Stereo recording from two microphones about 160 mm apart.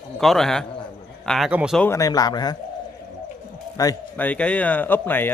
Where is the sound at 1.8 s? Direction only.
20° left (ahead or behind).